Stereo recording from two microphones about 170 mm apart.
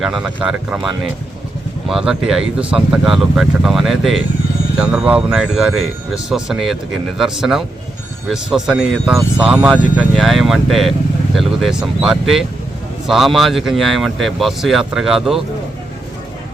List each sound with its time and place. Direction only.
0.0 s speech: 5° right (ahead or behind)